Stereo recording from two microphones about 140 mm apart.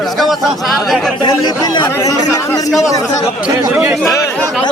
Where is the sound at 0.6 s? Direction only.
Centre (ahead or behind).